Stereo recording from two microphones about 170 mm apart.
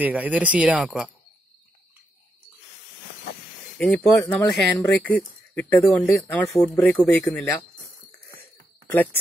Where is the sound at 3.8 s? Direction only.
5° left (ahead or behind).